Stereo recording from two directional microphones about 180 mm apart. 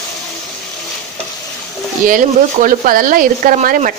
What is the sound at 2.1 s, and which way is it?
Speech, 50° right (ahead or behind).